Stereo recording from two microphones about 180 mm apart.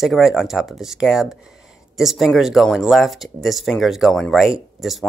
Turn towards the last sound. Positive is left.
turn(degrees=0)  # may be behind; listen again after turning